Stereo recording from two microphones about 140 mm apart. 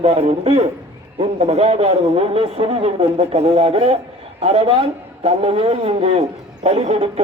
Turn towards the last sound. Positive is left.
turn(degrees=-50)  # may be behind; listen again after turning